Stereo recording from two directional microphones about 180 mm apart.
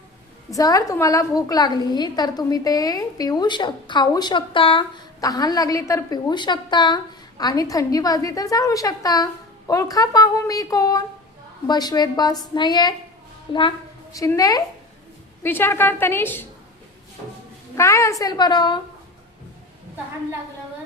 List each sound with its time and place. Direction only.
0.5 s a woman's voice: 20° left (ahead or behind)
17.7 s a woman's voice: 15° left (ahead or behind)